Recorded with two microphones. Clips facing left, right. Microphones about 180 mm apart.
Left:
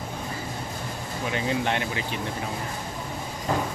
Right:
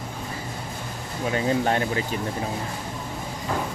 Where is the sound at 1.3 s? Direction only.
40° right (ahead or behind).